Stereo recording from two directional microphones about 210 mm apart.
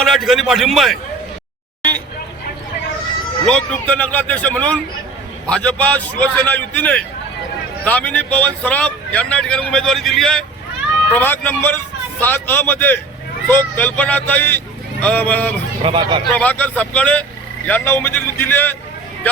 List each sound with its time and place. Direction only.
0.0 s speech: centre (ahead or behind)
3.4 s a man's voice: 5° left (ahead or behind)
15.8 s a man's voice: 25° right (ahead or behind)
16.3 s a man's voice: 5° left (ahead or behind)